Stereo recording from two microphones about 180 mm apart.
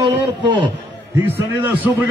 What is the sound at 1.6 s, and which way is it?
Speech, 10° right (ahead or behind).